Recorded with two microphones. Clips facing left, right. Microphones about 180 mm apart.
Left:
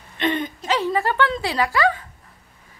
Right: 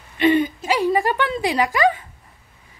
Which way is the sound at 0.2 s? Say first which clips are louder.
Right 7 dB; 5° right (ahead or behind).